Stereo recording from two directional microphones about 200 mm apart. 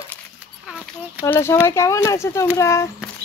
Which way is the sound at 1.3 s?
10° left (ahead or behind).